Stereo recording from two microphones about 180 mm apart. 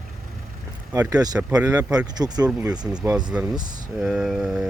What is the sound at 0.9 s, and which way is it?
Speech, 20° right (ahead or behind).